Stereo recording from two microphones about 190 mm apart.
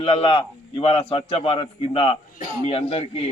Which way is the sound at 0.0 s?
30° left (ahead or behind).